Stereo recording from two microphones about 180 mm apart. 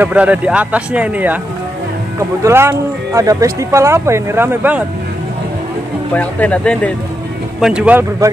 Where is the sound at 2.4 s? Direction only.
15° right (ahead or behind).